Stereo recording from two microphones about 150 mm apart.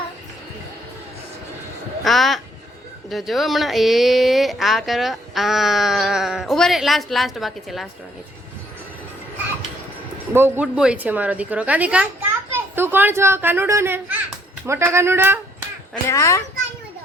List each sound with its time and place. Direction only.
2.0 s speech: centre (ahead or behind)
10.3 s a woman's voice: 15° right (ahead or behind)
16.0 s a child's voice: 20° left (ahead or behind)